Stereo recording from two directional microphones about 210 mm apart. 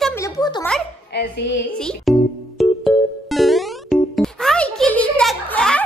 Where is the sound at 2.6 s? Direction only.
Centre (ahead or behind).